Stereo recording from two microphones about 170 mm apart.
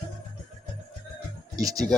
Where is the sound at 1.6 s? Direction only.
20° right (ahead or behind).